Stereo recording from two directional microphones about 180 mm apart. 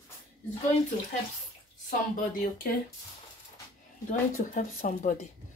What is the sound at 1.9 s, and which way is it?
Speech, 50° left (ahead or behind).